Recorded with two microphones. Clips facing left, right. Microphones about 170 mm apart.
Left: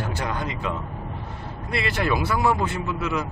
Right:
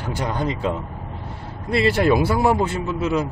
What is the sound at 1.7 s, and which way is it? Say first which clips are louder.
A man's voice: right 7 dB; 35° right (ahead or behind).